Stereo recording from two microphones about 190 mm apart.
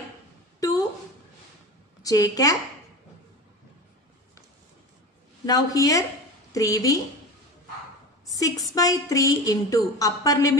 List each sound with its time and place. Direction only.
0.6 s a sound: 20° left (ahead or behind)
2.0 s a woman's voice: 20° left (ahead or behind)
5.5 s a woman's voice: 20° left (ahead or behind)
8.3 s a woman's voice: 20° left (ahead or behind)